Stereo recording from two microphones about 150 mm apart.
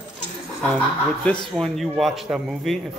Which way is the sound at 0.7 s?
5° left (ahead or behind).